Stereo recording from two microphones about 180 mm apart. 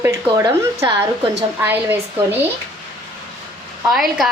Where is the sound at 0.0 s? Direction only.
15° right (ahead or behind).